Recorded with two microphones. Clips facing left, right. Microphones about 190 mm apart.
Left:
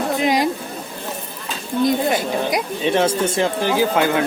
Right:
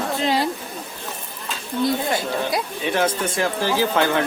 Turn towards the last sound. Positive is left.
turn(degrees=15)  # may be behind; listen again after turning